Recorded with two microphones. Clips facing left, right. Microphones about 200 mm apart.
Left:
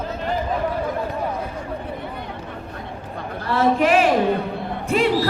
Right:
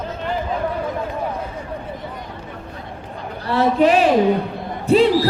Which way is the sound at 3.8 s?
35° right (ahead or behind).